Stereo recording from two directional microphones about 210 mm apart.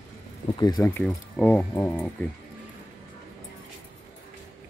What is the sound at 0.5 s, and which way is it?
Speech, 20° left (ahead or behind).